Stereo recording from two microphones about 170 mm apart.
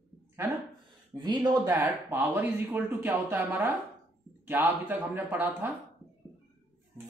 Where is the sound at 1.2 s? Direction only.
25° right (ahead or behind).